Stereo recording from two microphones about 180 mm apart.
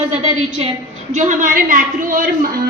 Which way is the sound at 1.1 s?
40° right (ahead or behind).